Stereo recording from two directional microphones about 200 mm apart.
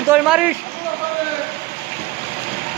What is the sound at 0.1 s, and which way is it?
Speech, 5° right (ahead or behind).